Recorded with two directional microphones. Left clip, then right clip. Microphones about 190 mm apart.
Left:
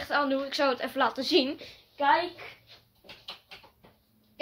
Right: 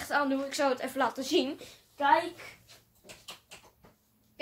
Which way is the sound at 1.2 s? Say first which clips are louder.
Left 4 dB; 15° left (ahead or behind).